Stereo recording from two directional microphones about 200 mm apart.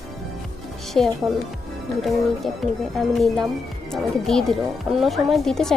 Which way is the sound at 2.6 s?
Centre (ahead or behind).